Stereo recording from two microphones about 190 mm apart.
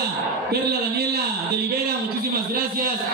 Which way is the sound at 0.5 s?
55° right (ahead or behind).